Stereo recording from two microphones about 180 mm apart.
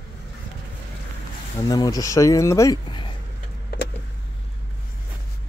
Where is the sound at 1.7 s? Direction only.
20° left (ahead or behind).